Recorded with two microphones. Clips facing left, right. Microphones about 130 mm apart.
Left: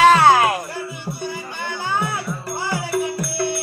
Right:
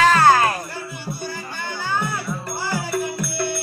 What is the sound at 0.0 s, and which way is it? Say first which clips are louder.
Music: left 2 dB; 20° left (ahead or behind).